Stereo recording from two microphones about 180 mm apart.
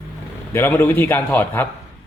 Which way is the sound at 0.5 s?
10° left (ahead or behind).